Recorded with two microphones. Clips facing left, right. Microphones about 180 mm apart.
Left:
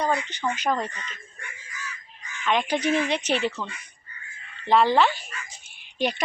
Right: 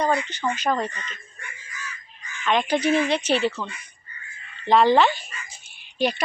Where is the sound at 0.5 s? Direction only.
15° left (ahead or behind).